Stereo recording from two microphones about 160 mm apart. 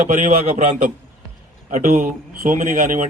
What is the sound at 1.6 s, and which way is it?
Speech, 55° right (ahead or behind).